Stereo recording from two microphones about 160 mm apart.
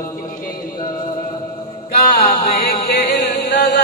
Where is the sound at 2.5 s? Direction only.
70° left (ahead or behind).